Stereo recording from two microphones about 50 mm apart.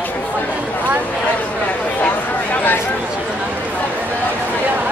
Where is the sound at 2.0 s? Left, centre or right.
Left.